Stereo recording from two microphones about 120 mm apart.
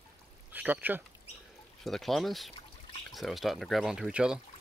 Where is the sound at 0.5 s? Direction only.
15° right (ahead or behind).